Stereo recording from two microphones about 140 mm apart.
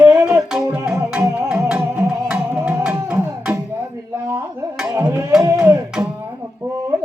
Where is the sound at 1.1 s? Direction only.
10° right (ahead or behind).